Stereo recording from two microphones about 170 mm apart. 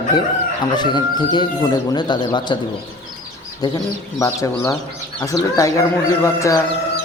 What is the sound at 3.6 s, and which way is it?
Speech, 20° left (ahead or behind).